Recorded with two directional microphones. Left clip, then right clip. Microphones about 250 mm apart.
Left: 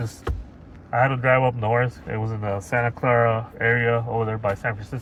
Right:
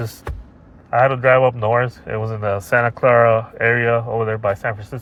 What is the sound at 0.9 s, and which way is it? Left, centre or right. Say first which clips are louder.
Speech: right 6 dB; right.